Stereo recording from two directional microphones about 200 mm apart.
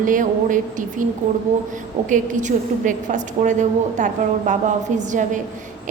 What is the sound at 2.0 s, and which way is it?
A woman's voice, 40° right (ahead or behind).